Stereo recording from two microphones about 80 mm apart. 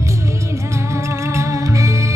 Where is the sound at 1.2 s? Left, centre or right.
Right.